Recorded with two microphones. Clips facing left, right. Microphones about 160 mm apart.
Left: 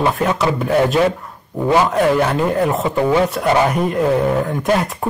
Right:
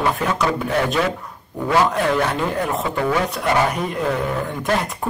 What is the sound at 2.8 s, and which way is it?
Speech, 20° left (ahead or behind).